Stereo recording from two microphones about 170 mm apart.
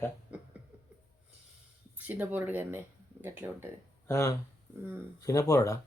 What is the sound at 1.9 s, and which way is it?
Speech, 10° right (ahead or behind).